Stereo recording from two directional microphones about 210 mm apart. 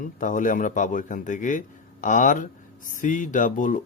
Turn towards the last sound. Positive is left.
turn(degrees=40)  # may be behind; listen again after turning